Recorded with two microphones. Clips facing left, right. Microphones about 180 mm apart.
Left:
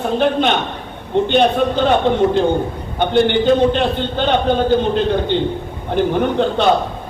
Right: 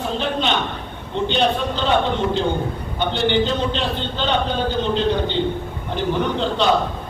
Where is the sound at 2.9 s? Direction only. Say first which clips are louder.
Left 5 dB; 55° left (ahead or behind).